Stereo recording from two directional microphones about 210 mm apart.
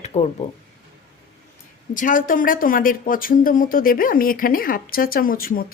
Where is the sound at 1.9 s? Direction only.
40° left (ahead or behind).